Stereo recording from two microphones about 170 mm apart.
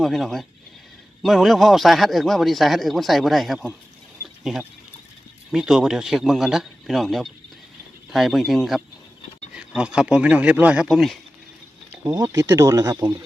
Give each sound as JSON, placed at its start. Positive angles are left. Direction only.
{"t": 0.0, "sound": "a man's voice", "side_deg": 0}
{"t": 11.9, "sound": "speech", "side_deg": -20}